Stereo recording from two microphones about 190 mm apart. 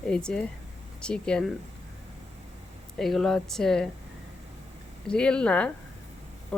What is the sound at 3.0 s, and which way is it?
Speech, centre (ahead or behind).